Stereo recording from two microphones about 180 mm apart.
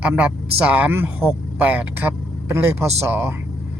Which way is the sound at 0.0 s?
5° right (ahead or behind).